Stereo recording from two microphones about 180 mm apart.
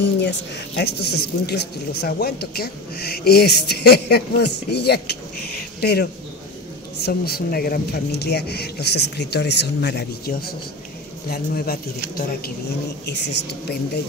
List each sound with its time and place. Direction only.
0.0 s speech: 70° left (ahead or behind)
5.6 s a sound: 60° left (ahead or behind)
7.0 s speech: 60° left (ahead or behind)
13.1 s a woman's voice: 70° left (ahead or behind)